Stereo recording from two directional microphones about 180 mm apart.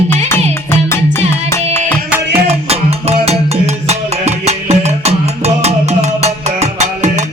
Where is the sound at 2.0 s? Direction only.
10° right (ahead or behind).